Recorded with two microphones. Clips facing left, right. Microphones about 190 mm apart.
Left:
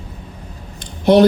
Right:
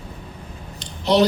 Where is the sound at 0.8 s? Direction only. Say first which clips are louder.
Left 6 dB; 55° left (ahead or behind).